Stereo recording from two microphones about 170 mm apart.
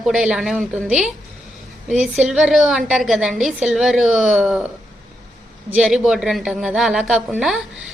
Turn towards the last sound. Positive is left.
turn(degrees=-5)  # may be behind; listen again after turning